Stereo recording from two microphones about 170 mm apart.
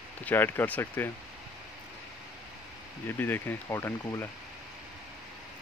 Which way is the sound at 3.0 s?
10° left (ahead or behind).